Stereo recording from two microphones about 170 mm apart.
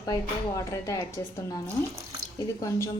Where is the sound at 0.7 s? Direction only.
20° left (ahead or behind).